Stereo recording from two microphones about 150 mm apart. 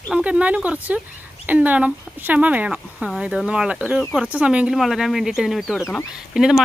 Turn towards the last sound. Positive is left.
turn(degrees=-5)  # may be behind; listen again after turning